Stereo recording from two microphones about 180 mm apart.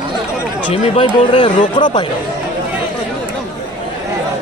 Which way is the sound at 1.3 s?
25° left (ahead or behind).